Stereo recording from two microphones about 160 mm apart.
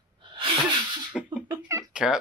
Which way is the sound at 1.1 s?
10° right (ahead or behind).